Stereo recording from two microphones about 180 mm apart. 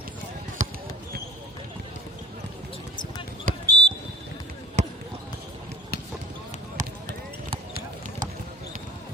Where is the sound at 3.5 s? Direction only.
50° right (ahead or behind).